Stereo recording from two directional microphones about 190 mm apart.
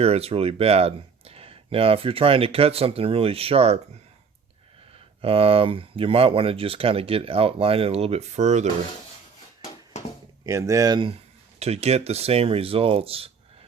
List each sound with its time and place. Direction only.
0.0 s speech: 30° right (ahead or behind)
5.2 s speech: 30° right (ahead or behind)
10.4 s speech: 15° right (ahead or behind)
11.6 s speech: 35° right (ahead or behind)